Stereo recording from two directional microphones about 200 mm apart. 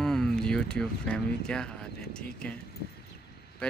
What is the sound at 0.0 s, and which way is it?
Speech, centre (ahead or behind).